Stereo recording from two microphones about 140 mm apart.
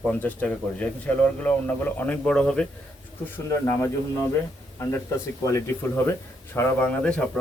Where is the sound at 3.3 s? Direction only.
20° left (ahead or behind).